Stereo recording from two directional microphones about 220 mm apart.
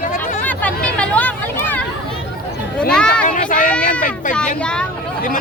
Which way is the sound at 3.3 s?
35° left (ahead or behind).